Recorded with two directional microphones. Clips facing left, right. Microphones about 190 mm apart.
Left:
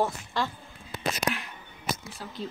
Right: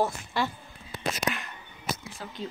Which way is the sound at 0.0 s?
10° right (ahead or behind).